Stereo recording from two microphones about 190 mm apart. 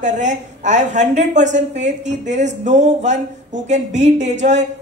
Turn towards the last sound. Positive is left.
turn(degrees=-40)  # may be behind; listen again after turning